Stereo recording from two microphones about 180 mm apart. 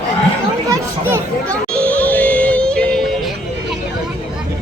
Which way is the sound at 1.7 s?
10° left (ahead or behind).